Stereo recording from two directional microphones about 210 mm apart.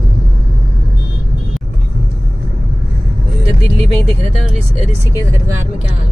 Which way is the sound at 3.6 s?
30° right (ahead or behind).